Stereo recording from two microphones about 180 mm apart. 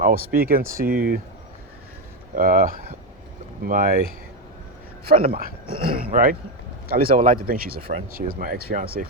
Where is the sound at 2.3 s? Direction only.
50° right (ahead or behind).